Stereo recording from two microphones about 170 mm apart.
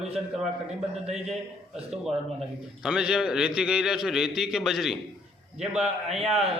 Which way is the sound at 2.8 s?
5° right (ahead or behind).